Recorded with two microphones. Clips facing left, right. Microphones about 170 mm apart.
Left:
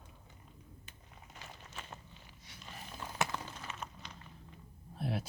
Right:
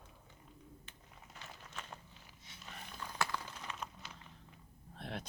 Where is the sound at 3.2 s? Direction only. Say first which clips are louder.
Left 2 dB; 20° left (ahead or behind).